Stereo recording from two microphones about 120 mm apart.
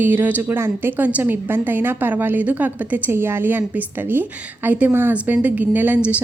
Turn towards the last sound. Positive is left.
turn(degrees=-10)  # may be behind; listen again after turning